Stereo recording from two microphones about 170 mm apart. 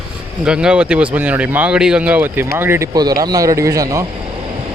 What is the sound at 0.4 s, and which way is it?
A man's voice, 5° right (ahead or behind).